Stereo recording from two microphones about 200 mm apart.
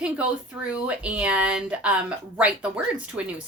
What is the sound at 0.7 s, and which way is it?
A woman's voice, 5° right (ahead or behind).